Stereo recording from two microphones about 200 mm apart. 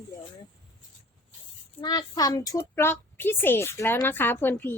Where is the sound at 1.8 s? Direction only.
20° left (ahead or behind).